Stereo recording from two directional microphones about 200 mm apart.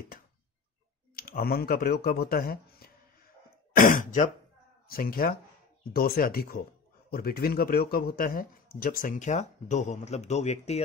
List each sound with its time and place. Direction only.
1.1 s speech: 50° left (ahead or behind); by 10.8 s 35° left (ahead or behind)